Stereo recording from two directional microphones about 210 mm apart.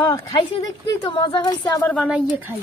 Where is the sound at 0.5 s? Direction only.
25° left (ahead or behind).